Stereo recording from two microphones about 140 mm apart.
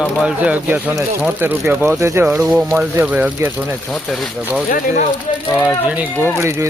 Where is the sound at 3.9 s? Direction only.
Centre (ahead or behind).